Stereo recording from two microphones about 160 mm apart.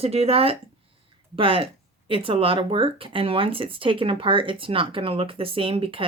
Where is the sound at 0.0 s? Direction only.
40° right (ahead or behind).